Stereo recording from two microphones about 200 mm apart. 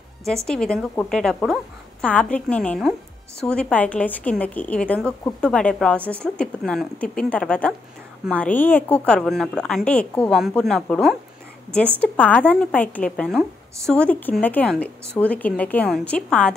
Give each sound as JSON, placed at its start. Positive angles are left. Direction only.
{"t": 0.5, "sound": "a woman's voice", "side_deg": 5}